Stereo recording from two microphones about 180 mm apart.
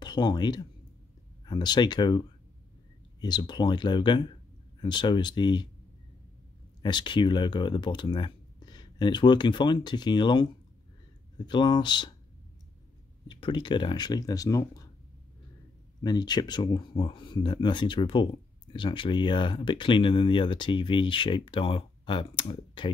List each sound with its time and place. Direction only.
0.0 s speech: 25° left (ahead or behind)
6.8 s speech: 25° left (ahead or behind)
13.3 s speech: 25° left (ahead or behind)
16.0 s speech: 20° left (ahead or behind)